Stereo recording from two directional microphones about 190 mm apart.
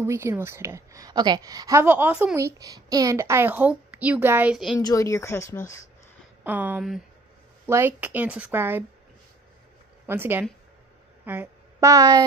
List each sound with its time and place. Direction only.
0.0 s a woman's voice: 15° right (ahead or behind)
4.7 s speech: 15° left (ahead or behind)
6.4 s a woman's voice: 10° right (ahead or behind)
10.0 s a woman's voice: 10° right (ahead or behind)